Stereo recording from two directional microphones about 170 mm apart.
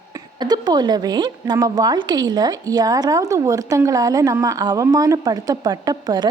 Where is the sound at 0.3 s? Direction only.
25° right (ahead or behind).